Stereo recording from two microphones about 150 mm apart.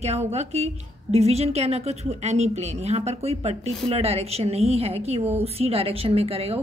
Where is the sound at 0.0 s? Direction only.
45° right (ahead or behind).